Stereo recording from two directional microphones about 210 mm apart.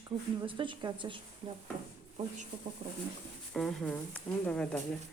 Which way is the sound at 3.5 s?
Centre (ahead or behind).